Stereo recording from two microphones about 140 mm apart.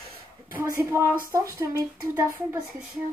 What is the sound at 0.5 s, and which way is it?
Speech, 20° right (ahead or behind).